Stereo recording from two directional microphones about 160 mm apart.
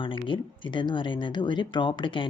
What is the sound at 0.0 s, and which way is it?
Speech, 30° left (ahead or behind).